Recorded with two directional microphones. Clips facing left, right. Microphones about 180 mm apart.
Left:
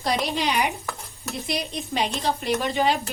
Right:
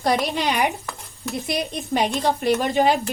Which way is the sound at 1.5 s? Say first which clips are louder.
Right 4 dB; 50° right (ahead or behind).